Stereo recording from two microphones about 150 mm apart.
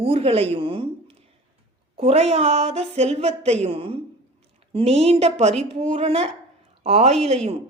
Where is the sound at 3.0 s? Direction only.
45° right (ahead or behind).